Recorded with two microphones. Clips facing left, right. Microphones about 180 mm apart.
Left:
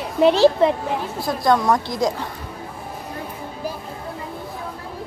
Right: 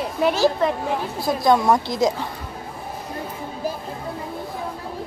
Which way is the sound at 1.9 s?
20° right (ahead or behind).